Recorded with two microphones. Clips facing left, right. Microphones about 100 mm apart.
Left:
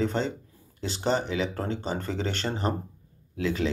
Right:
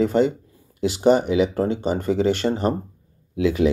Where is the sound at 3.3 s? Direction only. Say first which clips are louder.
Right 8 dB; 15° right (ahead or behind).